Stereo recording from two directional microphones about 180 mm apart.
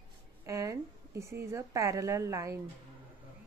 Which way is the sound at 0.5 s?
15° right (ahead or behind).